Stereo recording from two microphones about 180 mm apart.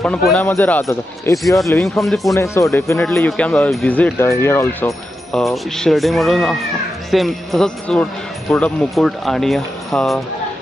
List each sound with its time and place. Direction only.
0.0 s speech: 5° left (ahead or behind)
1.8 s speech: centre (ahead or behind)
2.3 s speech: 15° left (ahead or behind)
3.3 s speech: 5° left (ahead or behind)
5.3 s speech: centre (ahead or behind)